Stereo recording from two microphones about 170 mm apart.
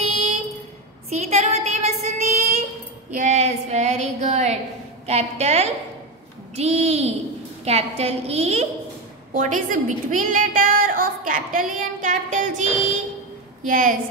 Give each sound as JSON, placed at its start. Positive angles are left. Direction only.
{"t": 0.0, "sound": "a sound", "side_deg": -35}
{"t": 1.1, "sound": "child singing", "side_deg": -40}
{"t": 5.0, "sound": "a woman's voice", "side_deg": -40}
{"t": 9.3, "sound": "a woman's voice", "side_deg": -50}